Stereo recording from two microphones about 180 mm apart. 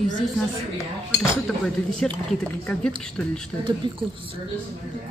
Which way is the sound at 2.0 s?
5° left (ahead or behind).